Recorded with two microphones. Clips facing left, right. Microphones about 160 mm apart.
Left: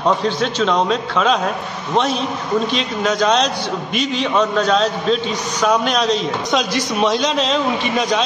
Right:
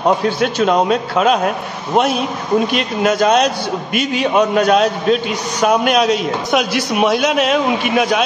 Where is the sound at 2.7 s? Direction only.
55° right (ahead or behind).